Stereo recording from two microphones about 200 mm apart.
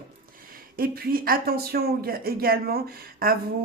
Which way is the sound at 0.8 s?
50° right (ahead or behind).